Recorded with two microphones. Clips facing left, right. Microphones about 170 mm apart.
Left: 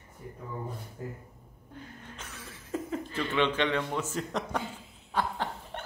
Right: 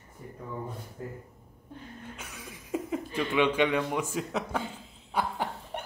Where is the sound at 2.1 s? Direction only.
10° right (ahead or behind).